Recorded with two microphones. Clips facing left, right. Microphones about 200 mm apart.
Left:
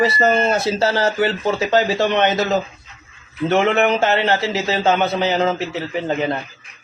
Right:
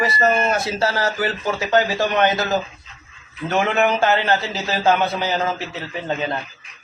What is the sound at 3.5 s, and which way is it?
Speech, 25° left (ahead or behind).